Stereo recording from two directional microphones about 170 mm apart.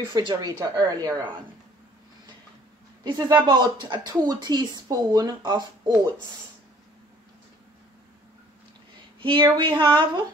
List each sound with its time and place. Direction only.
0.1 s speech: 25° right (ahead or behind)
3.0 s speech: 25° right (ahead or behind)
9.2 s speech: 30° right (ahead or behind)